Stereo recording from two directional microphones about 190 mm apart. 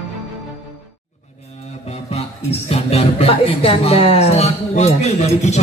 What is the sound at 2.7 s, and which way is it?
Speech, 30° left (ahead or behind).